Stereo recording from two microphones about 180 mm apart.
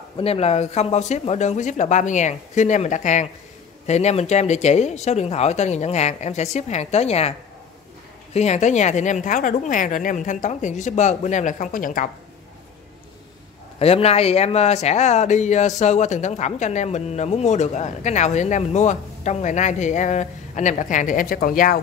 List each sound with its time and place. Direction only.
0.2 s a woman's voice: 35° left (ahead or behind)
13.7 s speech: 35° left (ahead or behind); by 21.7 s 50° left (ahead or behind)